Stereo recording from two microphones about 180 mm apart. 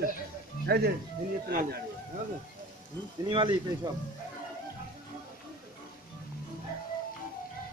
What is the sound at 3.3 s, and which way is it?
Speech, 25° right (ahead or behind).